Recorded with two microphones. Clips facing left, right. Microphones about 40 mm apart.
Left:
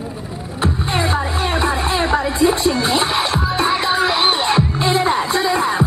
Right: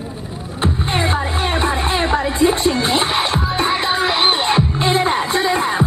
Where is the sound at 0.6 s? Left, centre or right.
Right.